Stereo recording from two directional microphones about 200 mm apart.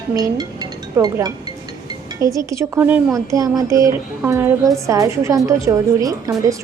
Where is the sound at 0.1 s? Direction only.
20° right (ahead or behind).